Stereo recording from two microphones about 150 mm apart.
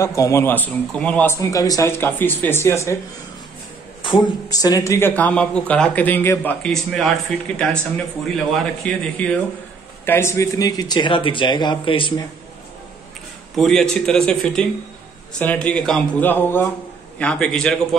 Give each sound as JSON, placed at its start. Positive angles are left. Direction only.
{"t": 0.0, "sound": "a man's voice", "side_deg": 20}
{"t": 4.0, "sound": "a man's voice", "side_deg": 30}
{"t": 6.6, "sound": "a man's voice", "side_deg": 5}
{"t": 13.6, "sound": "a man's voice", "side_deg": 0}